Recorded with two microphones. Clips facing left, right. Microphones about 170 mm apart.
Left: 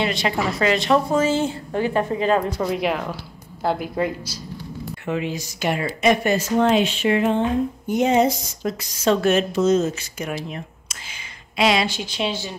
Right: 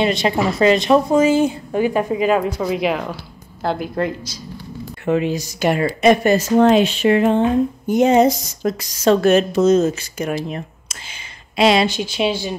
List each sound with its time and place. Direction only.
0.0 s a woman's voice: 20° right (ahead or behind); by 4.4 s 5° left (ahead or behind)
5.0 s speech: 40° right (ahead or behind)
11.9 s a woman's voice: 10° right (ahead or behind)